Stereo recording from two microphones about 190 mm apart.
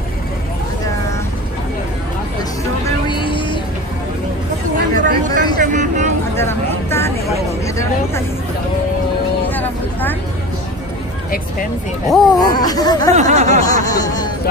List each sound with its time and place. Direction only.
3.1 s vehicle: 25° left (ahead or behind)
4.9 s a sound: 45° right (ahead or behind)
5.6 s vehicle: 40° right (ahead or behind)
6.3 s vehicle: 10° left (ahead or behind)
7.6 s a sound: 15° left (ahead or behind)
9.5 s vehicle: 10° left (ahead or behind)
12.3 s speech: 20° left (ahead or behind)
13.1 s speech: 35° right (ahead or behind)
13.8 s speech: 20° left (ahead or behind)